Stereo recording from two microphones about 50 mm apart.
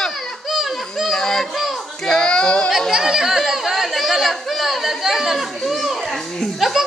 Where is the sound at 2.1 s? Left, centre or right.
Centre.